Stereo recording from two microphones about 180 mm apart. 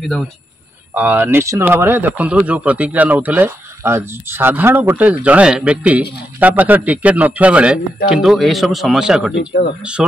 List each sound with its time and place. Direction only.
0.9 s speech: 10° right (ahead or behind)
9.3 s speech: 70° left (ahead or behind)
10.0 s speech: centre (ahead or behind)